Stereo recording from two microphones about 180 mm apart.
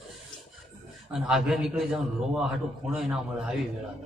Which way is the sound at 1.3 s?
5° right (ahead or behind).